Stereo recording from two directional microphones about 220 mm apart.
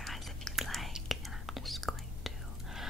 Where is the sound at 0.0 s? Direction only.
Centre (ahead or behind).